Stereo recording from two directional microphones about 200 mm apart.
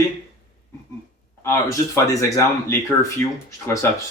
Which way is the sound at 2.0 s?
15° left (ahead or behind).